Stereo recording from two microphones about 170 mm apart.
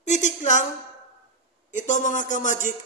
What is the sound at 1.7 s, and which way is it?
Speech, 45° left (ahead or behind).